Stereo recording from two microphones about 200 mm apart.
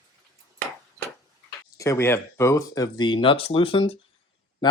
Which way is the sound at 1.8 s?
15° left (ahead or behind).